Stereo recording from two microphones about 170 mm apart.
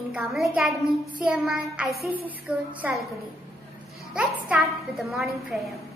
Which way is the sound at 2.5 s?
5° right (ahead or behind).